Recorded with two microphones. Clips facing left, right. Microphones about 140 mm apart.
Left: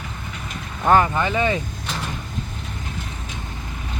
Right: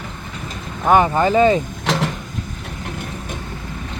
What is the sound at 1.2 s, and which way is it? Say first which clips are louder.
Speech: right 7 dB; 35° right (ahead or behind).